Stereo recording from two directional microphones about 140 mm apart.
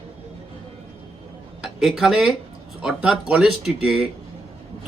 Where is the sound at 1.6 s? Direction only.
5° right (ahead or behind).